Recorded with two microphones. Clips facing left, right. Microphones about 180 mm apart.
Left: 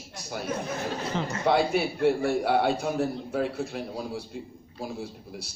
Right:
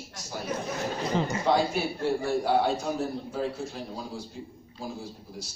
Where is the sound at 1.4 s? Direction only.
60° left (ahead or behind).